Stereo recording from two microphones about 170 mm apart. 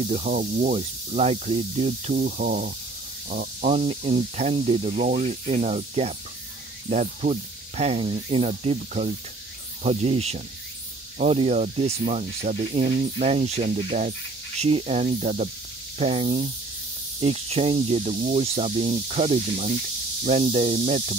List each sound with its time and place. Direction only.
0.0 s speech: 40° right (ahead or behind)
3.6 s speech: 35° right (ahead or behind)